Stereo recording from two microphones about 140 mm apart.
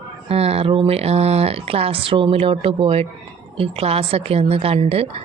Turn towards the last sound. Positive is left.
turn(degrees=-45)  # may be behind; listen again after turning